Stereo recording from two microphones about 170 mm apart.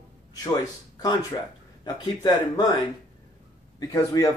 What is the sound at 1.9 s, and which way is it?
Speech, 20° left (ahead or behind).